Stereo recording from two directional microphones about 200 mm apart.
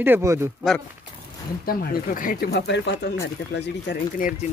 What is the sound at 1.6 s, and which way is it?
Speech, 45° left (ahead or behind).